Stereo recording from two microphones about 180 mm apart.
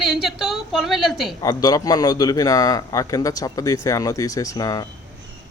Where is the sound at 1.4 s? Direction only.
20° left (ahead or behind).